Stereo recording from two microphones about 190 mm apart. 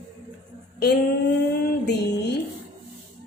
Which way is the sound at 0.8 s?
60° left (ahead or behind).